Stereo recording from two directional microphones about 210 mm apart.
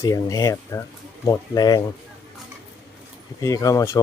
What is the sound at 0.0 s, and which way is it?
Speech, 15° left (ahead or behind).